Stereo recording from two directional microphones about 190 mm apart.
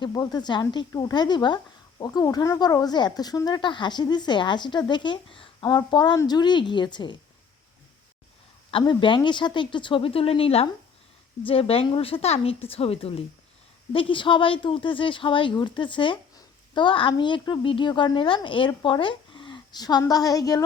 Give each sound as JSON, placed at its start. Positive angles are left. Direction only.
{"t": 0.0, "sound": "speech", "side_deg": 20}
{"t": 8.7, "sound": "a woman's voice", "side_deg": 25}